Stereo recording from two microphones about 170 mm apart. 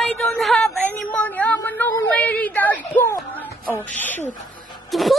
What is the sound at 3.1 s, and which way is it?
Music, 10° left (ahead or behind).